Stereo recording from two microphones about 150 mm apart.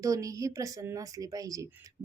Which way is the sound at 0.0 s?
20° right (ahead or behind).